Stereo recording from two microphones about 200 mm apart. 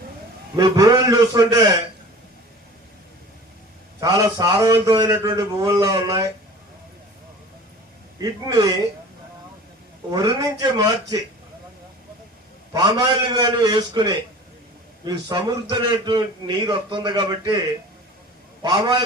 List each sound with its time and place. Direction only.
0.5 s a man's voice: 20° right (ahead or behind)
4.0 s a man's voice: 20° right (ahead or behind)
8.2 s a man's voice: 20° right (ahead or behind)
10.1 s a man's voice: 20° right (ahead or behind)
12.7 s a man's voice: 20° right (ahead or behind)
18.6 s a man's voice: 20° right (ahead or behind)